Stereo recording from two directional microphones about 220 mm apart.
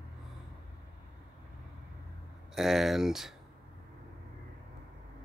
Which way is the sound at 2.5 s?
Centre (ahead or behind).